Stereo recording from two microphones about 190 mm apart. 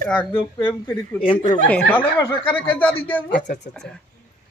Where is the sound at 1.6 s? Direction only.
5° left (ahead or behind).